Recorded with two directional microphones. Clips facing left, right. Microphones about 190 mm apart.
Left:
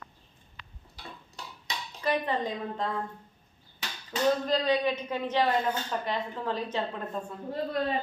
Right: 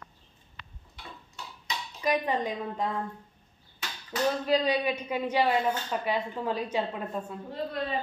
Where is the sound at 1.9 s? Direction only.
10° right (ahead or behind).